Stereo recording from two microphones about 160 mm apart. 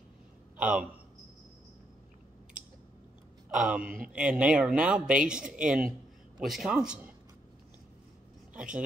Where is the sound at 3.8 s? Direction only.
60° right (ahead or behind).